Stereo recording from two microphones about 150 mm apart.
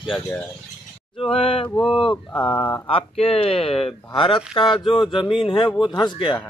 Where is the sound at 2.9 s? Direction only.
40° left (ahead or behind).